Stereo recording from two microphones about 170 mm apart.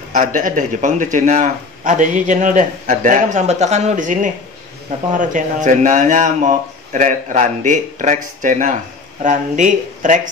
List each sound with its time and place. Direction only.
0.1 s speech: 50° right (ahead or behind)